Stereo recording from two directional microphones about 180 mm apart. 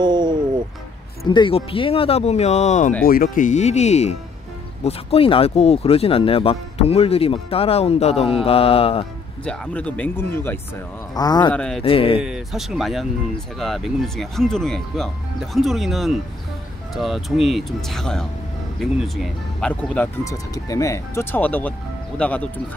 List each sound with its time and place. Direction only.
0.0 s a sound: 25° right (ahead or behind)
1.3 s speech: 30° left (ahead or behind)
3.0 s speech: 55° left (ahead or behind); by 9.0 s 30° left (ahead or behind)
9.4 s speech: 5° left (ahead or behind); by 11.5 s 20° left (ahead or behind)
11.5 s speech: 5° left (ahead or behind)
11.8 s speech: 30° left (ahead or behind)
12.2 s speech: 5° right (ahead or behind)
20.5 s speech: 20° left (ahead or behind)